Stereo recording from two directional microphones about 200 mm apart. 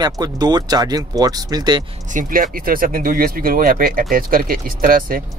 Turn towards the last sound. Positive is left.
turn(degrees=-45)  # may be behind; listen again after turning